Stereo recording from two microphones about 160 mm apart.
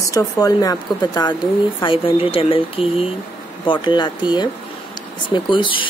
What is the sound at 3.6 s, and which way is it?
A woman's voice, 30° left (ahead or behind).